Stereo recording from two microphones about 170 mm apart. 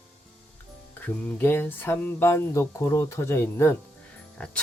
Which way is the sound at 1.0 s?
10° left (ahead or behind).